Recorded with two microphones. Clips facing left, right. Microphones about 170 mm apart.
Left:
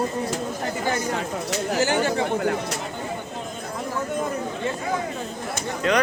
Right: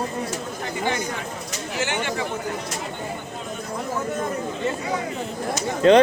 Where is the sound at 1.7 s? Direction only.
40° left (ahead or behind).